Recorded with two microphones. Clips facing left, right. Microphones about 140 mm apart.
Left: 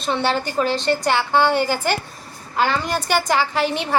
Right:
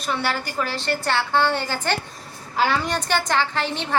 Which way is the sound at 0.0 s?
25° left (ahead or behind).